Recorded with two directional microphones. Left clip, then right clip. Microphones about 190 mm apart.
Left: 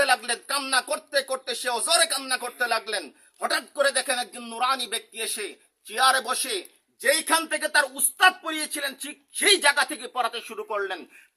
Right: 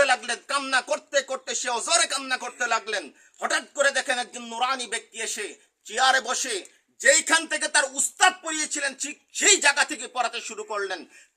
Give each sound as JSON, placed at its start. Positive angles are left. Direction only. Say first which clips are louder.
{"t": 0.0, "sound": "a man's voice", "louder": "right 1 dB", "side_deg": 0}